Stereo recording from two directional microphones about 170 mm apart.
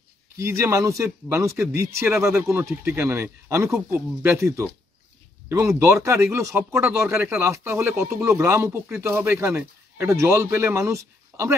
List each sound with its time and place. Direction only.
0.4 s speech: 15° right (ahead or behind)